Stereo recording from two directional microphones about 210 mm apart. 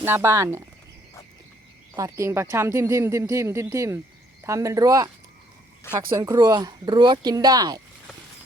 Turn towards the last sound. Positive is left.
turn(degrees=-20)  # may be behind; listen again after turning